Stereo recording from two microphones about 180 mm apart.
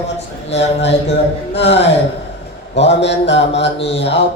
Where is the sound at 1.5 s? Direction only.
75° left (ahead or behind).